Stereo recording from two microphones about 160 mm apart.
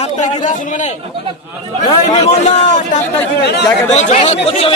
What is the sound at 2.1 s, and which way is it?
Speech, 45° left (ahead or behind).